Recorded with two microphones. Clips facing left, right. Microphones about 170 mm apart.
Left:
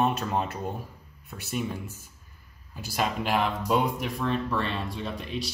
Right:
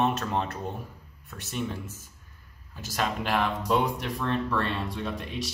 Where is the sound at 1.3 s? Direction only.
15° left (ahead or behind).